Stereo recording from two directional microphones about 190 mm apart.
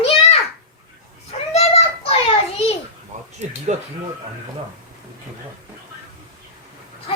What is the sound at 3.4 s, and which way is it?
Speech, 35° right (ahead or behind).